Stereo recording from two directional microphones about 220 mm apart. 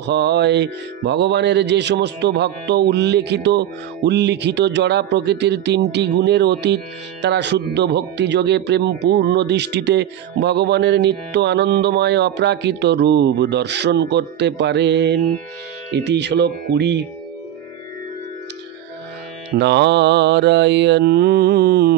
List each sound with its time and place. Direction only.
0.0 s music: 50° right (ahead or behind)
19.5 s music: 50° right (ahead or behind)